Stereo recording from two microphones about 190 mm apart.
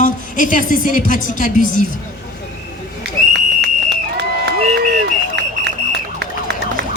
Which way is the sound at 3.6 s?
65° right (ahead or behind).